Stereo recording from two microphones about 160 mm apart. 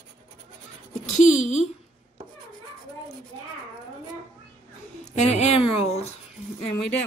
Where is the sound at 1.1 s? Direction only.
45° left (ahead or behind).